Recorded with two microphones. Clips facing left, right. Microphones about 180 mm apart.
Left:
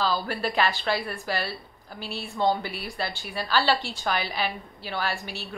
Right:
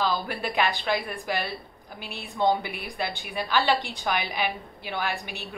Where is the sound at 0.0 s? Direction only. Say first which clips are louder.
Left 1 dB; 15° right (ahead or behind).